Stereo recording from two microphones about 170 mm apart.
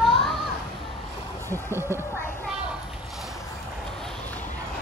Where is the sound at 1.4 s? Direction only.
15° right (ahead or behind).